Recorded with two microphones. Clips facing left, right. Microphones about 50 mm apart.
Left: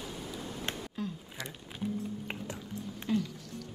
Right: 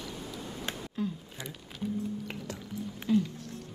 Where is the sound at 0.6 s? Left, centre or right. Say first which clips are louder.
Right 4 dB; centre.